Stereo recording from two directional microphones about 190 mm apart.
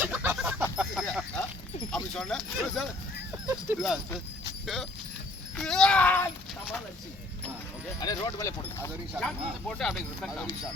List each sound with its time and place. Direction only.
0.0 s chicken: 10° right (ahead or behind)
0.9 s a sound: centre (ahead or behind)
2.1 s speech: centre (ahead or behind)
5.5 s a sound: 5° left (ahead or behind)
8.0 s speech: 20° left (ahead or behind)
9.1 s speech: 5° left (ahead or behind)